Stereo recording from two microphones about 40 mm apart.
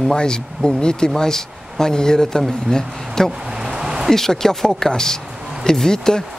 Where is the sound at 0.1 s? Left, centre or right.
Centre.